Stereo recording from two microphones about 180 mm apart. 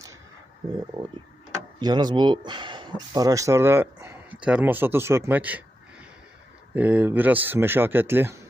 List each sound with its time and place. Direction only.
1.8 s speech: 25° right (ahead or behind)
6.7 s speech: 10° right (ahead or behind)